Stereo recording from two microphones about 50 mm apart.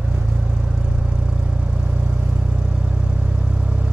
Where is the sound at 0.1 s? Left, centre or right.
Centre.